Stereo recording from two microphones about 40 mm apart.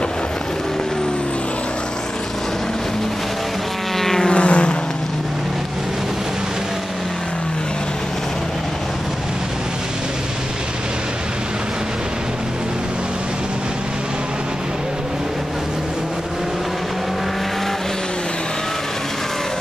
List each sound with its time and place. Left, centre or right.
4.0 s vehicle: centre
4.3 s vehicle: left